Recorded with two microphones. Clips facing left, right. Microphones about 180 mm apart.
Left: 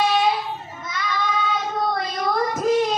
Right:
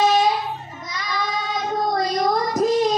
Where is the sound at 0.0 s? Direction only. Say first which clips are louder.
Right 2 dB; 40° right (ahead or behind).